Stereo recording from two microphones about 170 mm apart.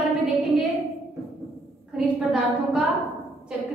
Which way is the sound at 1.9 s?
5° right (ahead or behind).